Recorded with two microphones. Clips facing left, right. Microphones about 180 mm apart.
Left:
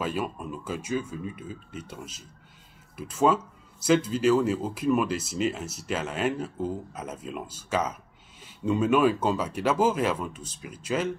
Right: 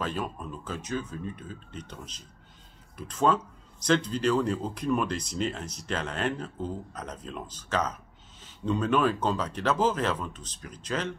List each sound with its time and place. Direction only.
0.0 s speech: 10° left (ahead or behind)